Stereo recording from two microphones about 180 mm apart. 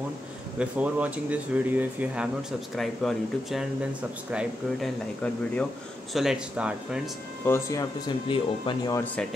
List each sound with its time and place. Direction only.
0.6 s speech: 5° right (ahead or behind)
7.4 s speech: 15° left (ahead or behind)
9.0 s speech: 5° left (ahead or behind)